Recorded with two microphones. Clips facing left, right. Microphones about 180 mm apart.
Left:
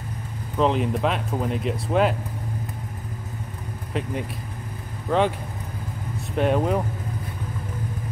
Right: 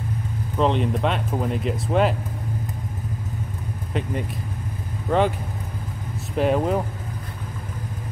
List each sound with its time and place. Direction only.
0.6 s speech: centre (ahead or behind)
3.9 s speech: centre (ahead or behind)
6.3 s speech: centre (ahead or behind)